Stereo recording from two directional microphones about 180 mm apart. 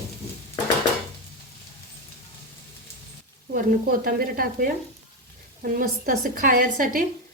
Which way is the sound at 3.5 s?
50° right (ahead or behind).